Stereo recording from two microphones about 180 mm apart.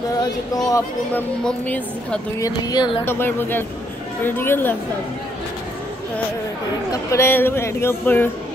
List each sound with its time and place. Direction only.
0.7 s speech: 15° left (ahead or behind)
1.4 s speech: 5° left (ahead or behind)
2.4 s speech: 20° left (ahead or behind)
3.1 s speech: 10° left (ahead or behind)
6.9 s speech: 15° left (ahead or behind)